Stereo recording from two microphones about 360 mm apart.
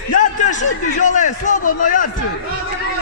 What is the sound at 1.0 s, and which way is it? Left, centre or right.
A man's voice, left.